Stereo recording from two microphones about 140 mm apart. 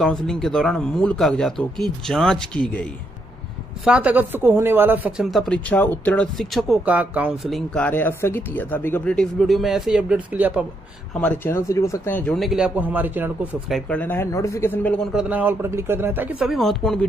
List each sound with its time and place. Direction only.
0.0 s speech: 5° left (ahead or behind)
3.8 s speech: 10° right (ahead or behind); by 6.2 s 10° left (ahead or behind)
6.3 s speech: centre (ahead or behind)
6.8 s speech: 10° right (ahead or behind)
7.4 s speech: 5° left (ahead or behind)
11.1 s speech: 10° left (ahead or behind)
12.4 s speech: 5° right (ahead or behind)
13.7 s speech: 5° left (ahead or behind)
15.1 s speech: 10° right (ahead or behind)